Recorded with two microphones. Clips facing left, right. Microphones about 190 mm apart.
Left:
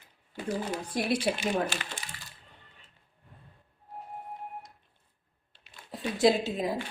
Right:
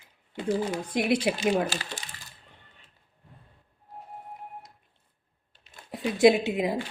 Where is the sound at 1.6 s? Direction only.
40° right (ahead or behind).